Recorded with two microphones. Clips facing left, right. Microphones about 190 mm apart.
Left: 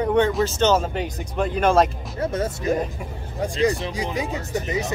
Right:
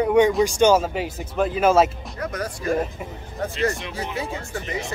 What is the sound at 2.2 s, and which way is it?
Speech, 25° left (ahead or behind).